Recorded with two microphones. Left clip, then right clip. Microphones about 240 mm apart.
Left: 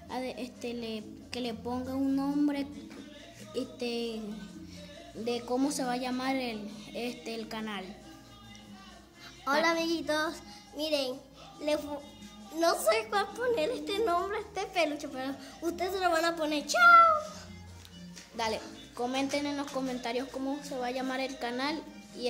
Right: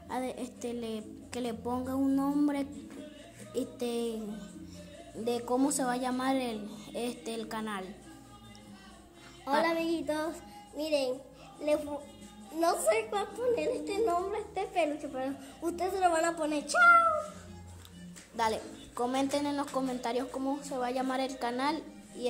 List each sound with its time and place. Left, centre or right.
0.1 s a woman's voice: centre
5.2 s a woman's voice: centre
9.5 s a woman's voice: centre
18.3 s a woman's voice: centre